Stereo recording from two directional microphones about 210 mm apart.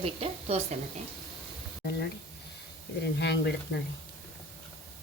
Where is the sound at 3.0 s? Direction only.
55° left (ahead or behind).